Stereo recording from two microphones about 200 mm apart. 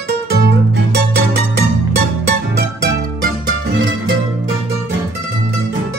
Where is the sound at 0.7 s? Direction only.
55° right (ahead or behind).